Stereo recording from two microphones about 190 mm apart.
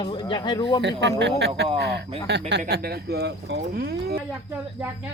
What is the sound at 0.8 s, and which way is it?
Speech, 65° right (ahead or behind).